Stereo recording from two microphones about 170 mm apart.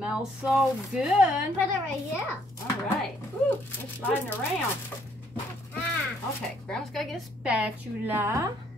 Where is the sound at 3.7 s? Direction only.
10° left (ahead or behind).